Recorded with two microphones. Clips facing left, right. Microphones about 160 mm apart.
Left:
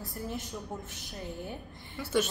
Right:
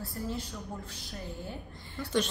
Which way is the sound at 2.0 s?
5° left (ahead or behind).